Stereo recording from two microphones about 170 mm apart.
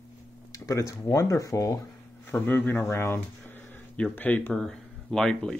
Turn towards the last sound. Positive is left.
turn(degrees=5)  # may be behind; listen again after turning